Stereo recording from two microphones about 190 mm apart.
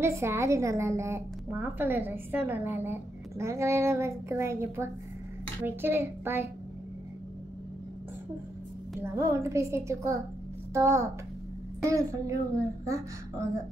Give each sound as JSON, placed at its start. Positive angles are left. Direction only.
{"t": 0.0, "sound": "a woman's voice", "side_deg": -15}
{"t": 9.0, "sound": "a woman's voice", "side_deg": -15}